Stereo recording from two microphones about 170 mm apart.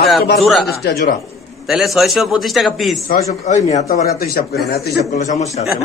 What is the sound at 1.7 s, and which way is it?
A man's voice, centre (ahead or behind).